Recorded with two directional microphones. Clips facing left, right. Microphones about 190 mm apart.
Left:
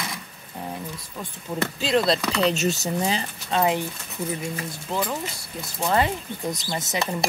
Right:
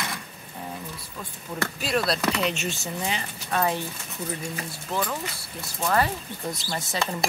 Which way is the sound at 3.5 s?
20° left (ahead or behind).